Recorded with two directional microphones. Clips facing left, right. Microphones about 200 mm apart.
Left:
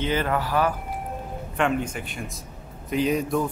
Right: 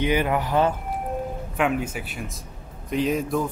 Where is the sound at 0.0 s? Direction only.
15° right (ahead or behind).